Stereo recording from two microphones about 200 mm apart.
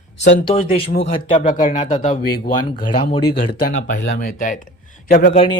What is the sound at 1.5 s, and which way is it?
Speech, 40° left (ahead or behind).